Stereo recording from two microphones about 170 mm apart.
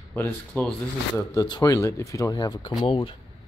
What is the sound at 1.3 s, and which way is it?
Speech, 20° left (ahead or behind).